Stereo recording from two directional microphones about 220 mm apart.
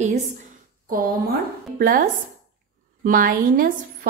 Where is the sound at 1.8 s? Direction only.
40° right (ahead or behind).